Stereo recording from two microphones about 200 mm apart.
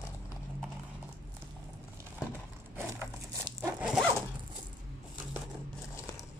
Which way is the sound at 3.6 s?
5° right (ahead or behind).